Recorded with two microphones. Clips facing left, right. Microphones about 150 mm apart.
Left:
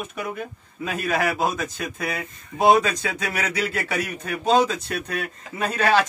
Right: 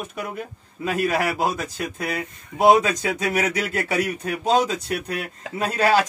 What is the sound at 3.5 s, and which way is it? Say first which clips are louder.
Speech: even; 45° right (ahead or behind).